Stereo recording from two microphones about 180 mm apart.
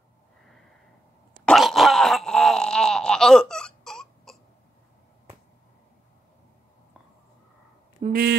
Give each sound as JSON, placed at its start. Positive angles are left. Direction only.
{"t": 1.4, "sound": "groan", "side_deg": 0}
{"t": 8.1, "sound": "speech", "side_deg": -60}